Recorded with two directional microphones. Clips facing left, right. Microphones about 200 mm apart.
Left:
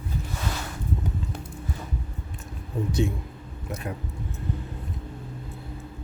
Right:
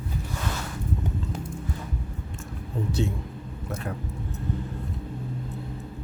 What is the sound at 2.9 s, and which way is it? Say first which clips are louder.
Speech: left 2 dB; 15° left (ahead or behind).